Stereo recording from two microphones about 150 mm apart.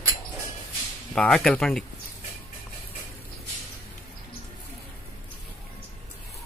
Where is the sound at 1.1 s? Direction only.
5° left (ahead or behind).